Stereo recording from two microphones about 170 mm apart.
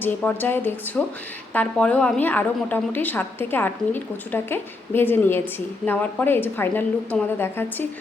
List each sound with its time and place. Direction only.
0.0 s a woman's voice: 10° left (ahead or behind)